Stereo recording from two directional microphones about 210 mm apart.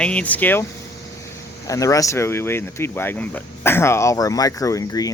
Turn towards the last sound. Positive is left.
turn(degrees=15)  # may be behind; listen again after turning